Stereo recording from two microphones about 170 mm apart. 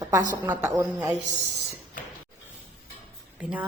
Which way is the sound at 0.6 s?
20° right (ahead or behind).